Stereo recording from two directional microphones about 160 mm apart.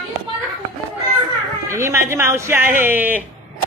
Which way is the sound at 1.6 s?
20° right (ahead or behind).